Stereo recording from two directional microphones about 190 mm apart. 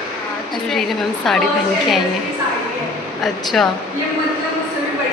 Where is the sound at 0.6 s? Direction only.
Centre (ahead or behind).